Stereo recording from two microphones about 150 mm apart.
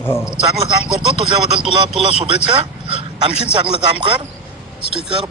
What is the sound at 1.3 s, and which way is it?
Speech, 35° right (ahead or behind).